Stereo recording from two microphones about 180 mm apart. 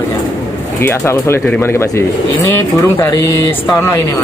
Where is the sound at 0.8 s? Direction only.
15° left (ahead or behind).